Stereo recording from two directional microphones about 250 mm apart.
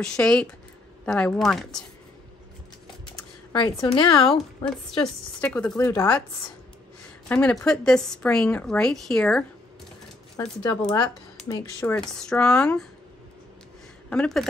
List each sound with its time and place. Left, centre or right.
0.0 s a woman's voice: centre
3.5 s a woman's voice: centre
4.4 s a woman's voice: centre
7.2 s a woman's voice: centre
10.6 s a woman's voice: centre
14.1 s a woman's voice: centre